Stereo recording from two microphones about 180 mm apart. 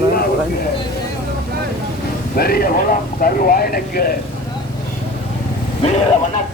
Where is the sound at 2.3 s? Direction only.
60° left (ahead or behind).